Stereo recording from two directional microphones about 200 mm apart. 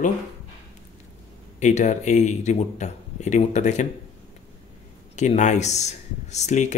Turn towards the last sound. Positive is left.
turn(degrees=35)  # may be behind; listen again after turning